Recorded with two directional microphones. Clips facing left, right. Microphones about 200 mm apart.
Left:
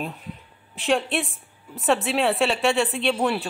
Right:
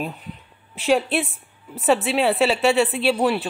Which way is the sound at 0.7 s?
Centre (ahead or behind).